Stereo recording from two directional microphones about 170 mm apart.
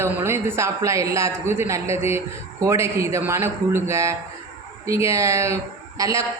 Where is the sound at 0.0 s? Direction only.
15° right (ahead or behind).